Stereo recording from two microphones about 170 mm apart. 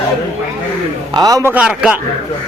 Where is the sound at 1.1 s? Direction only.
20° right (ahead or behind).